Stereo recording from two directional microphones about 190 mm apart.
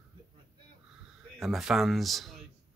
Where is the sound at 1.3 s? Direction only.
Centre (ahead or behind).